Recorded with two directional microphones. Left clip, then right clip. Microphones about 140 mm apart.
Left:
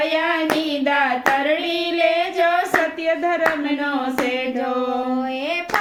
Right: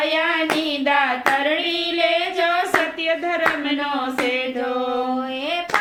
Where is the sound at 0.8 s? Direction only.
45° left (ahead or behind).